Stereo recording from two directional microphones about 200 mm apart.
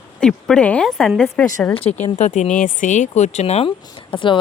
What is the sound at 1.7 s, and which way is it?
A woman's voice, 30° left (ahead or behind).